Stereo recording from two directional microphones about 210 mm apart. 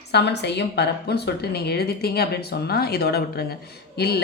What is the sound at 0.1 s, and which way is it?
Speech, 55° left (ahead or behind).